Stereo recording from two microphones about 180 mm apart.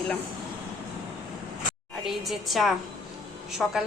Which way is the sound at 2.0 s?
Centre (ahead or behind).